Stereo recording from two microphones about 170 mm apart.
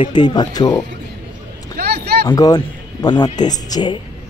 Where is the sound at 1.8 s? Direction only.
70° right (ahead or behind).